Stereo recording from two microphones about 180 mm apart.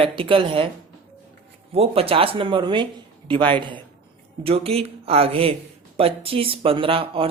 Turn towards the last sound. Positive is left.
turn(degrees=-30)  # may be behind; listen again after turning